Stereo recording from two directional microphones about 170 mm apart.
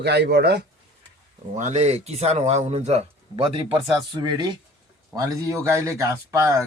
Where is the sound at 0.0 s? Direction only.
80° right.